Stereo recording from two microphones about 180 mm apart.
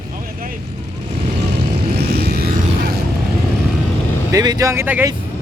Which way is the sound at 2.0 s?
65° right (ahead or behind).